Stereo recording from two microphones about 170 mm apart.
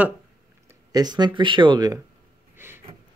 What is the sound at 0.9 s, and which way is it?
Speech, 25° right (ahead or behind).